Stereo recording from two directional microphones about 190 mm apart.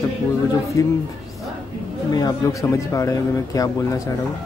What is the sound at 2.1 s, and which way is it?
Speech, 20° left (ahead or behind).